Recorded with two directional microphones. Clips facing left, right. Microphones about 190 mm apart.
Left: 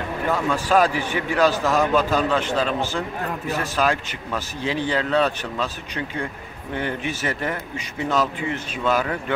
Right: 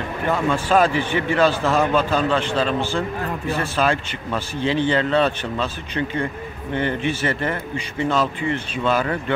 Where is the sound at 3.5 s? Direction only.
5° left (ahead or behind).